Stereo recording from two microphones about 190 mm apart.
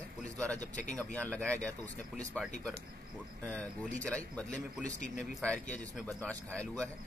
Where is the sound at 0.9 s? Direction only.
5° left (ahead or behind).